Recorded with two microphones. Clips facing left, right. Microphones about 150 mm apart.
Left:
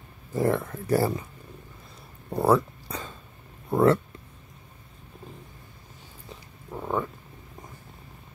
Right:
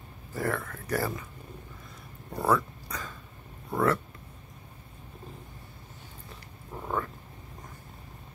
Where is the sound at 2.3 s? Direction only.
30° left (ahead or behind).